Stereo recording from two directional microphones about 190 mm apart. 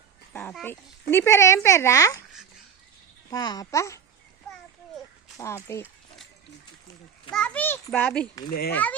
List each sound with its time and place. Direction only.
0.5 s speech: 10° left (ahead or behind)
3.2 s a child's voice: 20° left (ahead or behind)
5.4 s speech: 15° left (ahead or behind)
7.3 s speech: 5° left (ahead or behind)